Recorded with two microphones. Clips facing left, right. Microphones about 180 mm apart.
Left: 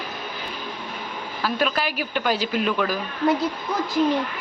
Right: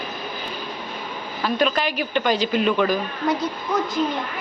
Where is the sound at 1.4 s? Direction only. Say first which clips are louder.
Right 3 dB; 5° left (ahead or behind).